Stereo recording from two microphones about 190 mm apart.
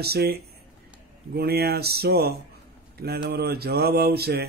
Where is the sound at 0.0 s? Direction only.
55° right (ahead or behind).